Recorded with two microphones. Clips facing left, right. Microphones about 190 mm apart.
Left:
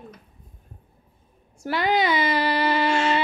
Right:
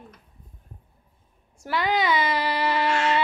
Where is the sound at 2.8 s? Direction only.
30° left (ahead or behind).